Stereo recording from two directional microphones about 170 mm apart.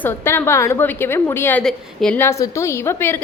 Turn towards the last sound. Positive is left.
turn(degrees=15)  # may be behind; listen again after turning